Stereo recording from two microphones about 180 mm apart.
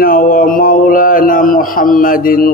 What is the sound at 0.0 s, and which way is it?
Speech, 50° left (ahead or behind).